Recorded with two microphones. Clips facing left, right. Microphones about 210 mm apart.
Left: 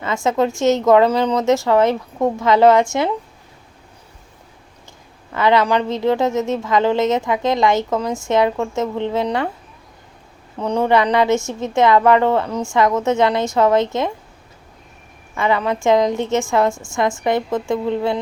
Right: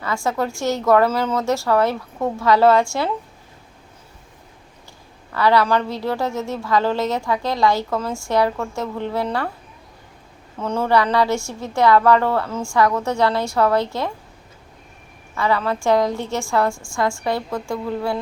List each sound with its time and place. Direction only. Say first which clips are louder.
0.0 s a woman's voice: left 5 dB; 20° left (ahead or behind)
5.3 s a woman's voice: left 1 dB; 20° left (ahead or behind)
10.6 s a woman's voice: left 3 dB; 15° left (ahead or behind)
15.4 s a woman's voice: left 2 dB; 20° left (ahead or behind)